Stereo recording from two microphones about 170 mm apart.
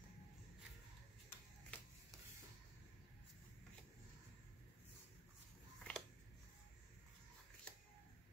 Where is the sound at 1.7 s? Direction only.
10° left (ahead or behind).